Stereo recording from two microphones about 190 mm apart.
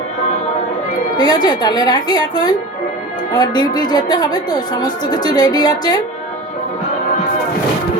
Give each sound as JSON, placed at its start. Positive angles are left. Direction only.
{"t": 1.1, "sound": "speech", "side_deg": 20}